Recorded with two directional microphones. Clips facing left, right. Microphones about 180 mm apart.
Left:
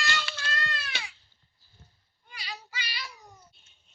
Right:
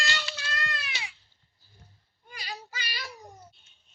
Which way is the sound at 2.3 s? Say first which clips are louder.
Right 2 dB; 45° right (ahead or behind).